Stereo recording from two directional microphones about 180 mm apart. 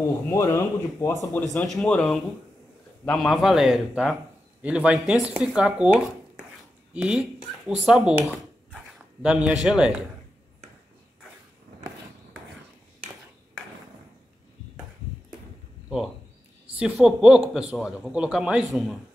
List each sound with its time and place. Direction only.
0.3 s speech: 15° left (ahead or behind)
1.5 s a man's voice: centre (ahead or behind)
8.3 s a sound: 5° right (ahead or behind)
16.7 s a man's voice: 5° right (ahead or behind)